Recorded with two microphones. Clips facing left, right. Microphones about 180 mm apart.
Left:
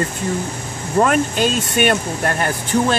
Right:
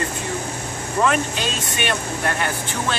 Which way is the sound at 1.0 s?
45° left (ahead or behind).